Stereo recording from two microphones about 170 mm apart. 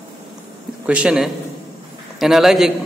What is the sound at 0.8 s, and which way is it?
A man's voice, 5° right (ahead or behind).